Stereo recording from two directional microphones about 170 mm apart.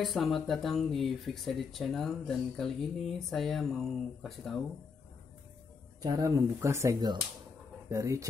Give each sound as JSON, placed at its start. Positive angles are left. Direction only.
{"t": 0.0, "sound": "speech", "side_deg": 0}
{"t": 6.0, "sound": "speech", "side_deg": -20}